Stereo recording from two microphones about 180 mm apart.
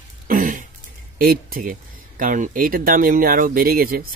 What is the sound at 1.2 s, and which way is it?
Speech, 55° right (ahead or behind).